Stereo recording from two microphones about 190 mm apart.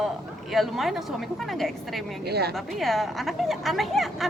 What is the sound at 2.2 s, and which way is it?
Speech, 55° right (ahead or behind).